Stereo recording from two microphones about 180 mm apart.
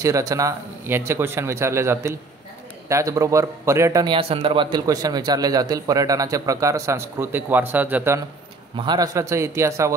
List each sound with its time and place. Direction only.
0.0 s a man's voice: 20° right (ahead or behind)
8.7 s a man's voice: 25° right (ahead or behind)